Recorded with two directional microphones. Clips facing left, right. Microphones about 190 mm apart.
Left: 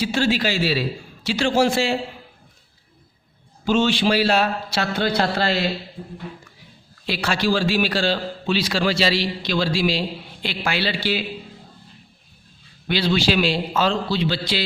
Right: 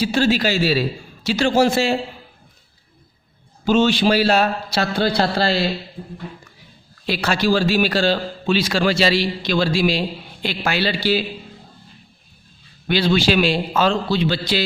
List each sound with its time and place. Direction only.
0.0 s a man's voice: 40° right (ahead or behind)
3.7 s a man's voice: 40° right (ahead or behind)
7.0 s a man's voice: 45° right (ahead or behind)
12.9 s a man's voice: 50° right (ahead or behind)